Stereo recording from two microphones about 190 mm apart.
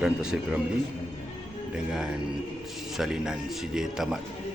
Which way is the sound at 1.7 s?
5° right (ahead or behind).